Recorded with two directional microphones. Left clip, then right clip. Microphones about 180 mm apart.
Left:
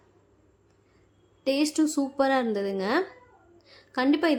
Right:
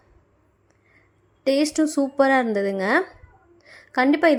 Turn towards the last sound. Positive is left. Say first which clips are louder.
# right 6 dB
turn(degrees=-25)  # may be behind; listen again after turning